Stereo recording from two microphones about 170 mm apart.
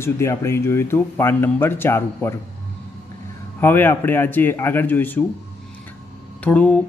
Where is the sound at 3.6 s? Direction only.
10° left (ahead or behind).